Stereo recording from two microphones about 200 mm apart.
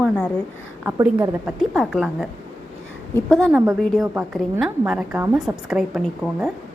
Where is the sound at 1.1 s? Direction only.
5° right (ahead or behind).